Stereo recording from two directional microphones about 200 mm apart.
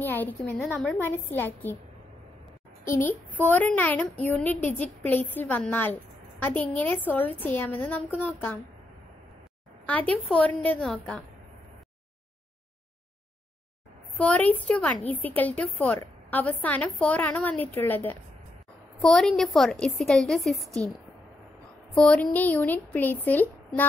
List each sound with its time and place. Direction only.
0.0 s a woman's voice: 10° left (ahead or behind)
2.8 s a woman's voice: 10° left (ahead or behind)
4.6 s a woman's voice: 35° left (ahead or behind)
5.0 s a woman's voice: 10° left (ahead or behind)
9.8 s speech: 5° left (ahead or behind)
14.1 s a woman's voice: 5° left (ahead or behind)
21.9 s a woman's voice: 5° left (ahead or behind)